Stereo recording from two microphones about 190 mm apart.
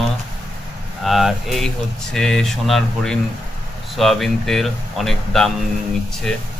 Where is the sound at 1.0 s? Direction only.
Centre (ahead or behind).